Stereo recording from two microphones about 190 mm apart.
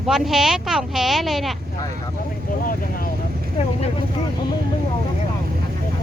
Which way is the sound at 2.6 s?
50° left (ahead or behind).